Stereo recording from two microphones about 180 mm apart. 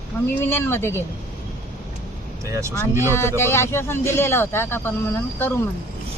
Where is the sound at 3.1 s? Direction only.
15° left (ahead or behind).